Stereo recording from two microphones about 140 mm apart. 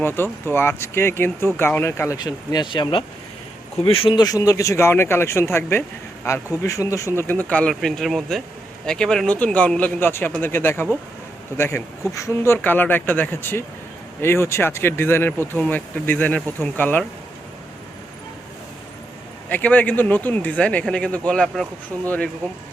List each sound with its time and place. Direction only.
0.0 s speech: 15° left (ahead or behind)
2.1 s speech: 30° left (ahead or behind); by 17.1 s 10° left (ahead or behind)
19.5 s speech: 10° left (ahead or behind)